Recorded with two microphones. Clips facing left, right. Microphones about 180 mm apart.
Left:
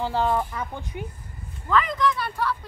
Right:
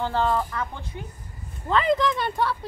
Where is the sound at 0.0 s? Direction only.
10° left (ahead or behind).